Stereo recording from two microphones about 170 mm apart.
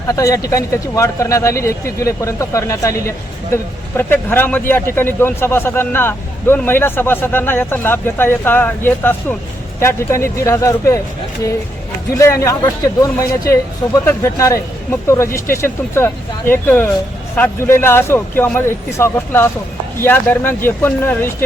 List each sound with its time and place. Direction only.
0.1 s a man's voice: 20° left (ahead or behind)
12.1 s a man's voice: 15° left (ahead or behind)